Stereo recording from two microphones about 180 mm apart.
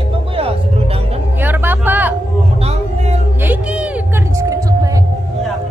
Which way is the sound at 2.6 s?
35° right (ahead or behind).